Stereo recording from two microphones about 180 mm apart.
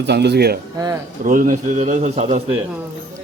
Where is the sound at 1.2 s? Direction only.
50° right (ahead or behind).